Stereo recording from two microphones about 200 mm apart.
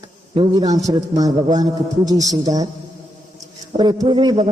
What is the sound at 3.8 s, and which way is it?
Speech, 20° right (ahead or behind).